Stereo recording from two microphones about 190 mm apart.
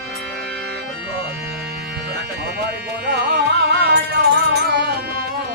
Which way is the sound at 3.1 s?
60° right (ahead or behind).